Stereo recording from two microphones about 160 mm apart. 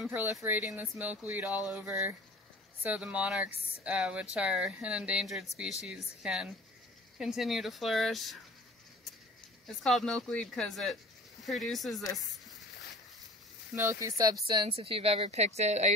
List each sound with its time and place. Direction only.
0.0 s speech: 10° right (ahead or behind)
9.7 s speech: centre (ahead or behind)
13.7 s speech: 15° right (ahead or behind)
14.5 s a woman's voice: 35° right (ahead or behind)